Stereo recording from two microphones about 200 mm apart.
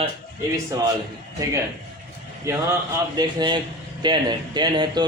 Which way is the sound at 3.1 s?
20° right (ahead or behind).